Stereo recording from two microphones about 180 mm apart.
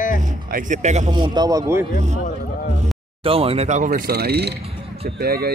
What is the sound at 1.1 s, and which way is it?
Speech, 25° right (ahead or behind).